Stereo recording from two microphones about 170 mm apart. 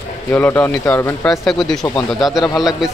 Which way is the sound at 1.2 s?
Centre (ahead or behind).